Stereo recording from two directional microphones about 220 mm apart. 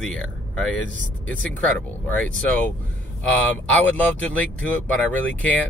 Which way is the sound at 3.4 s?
5° left (ahead or behind).